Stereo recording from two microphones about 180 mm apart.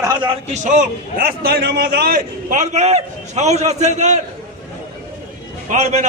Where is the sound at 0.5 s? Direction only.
40° right (ahead or behind).